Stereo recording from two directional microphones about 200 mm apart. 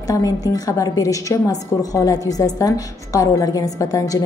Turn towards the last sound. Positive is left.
turn(degrees=15)  # may be behind; listen again after turning